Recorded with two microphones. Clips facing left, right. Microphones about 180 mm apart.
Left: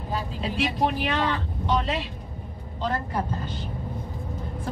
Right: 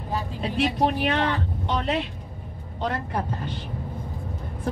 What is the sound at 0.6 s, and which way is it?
Speech, 55° right (ahead or behind).